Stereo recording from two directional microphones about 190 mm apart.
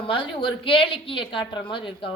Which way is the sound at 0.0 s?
25° left (ahead or behind).